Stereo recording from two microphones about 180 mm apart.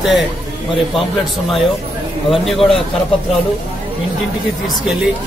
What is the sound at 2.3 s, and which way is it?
Speech, centre (ahead or behind).